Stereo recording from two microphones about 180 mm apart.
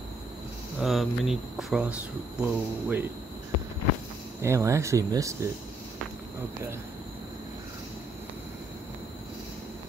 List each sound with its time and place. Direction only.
0.7 s speech: centre (ahead or behind)
4.4 s speech: 15° right (ahead or behind)